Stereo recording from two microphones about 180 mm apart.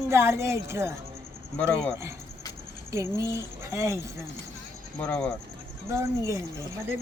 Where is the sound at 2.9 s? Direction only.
15° right (ahead or behind).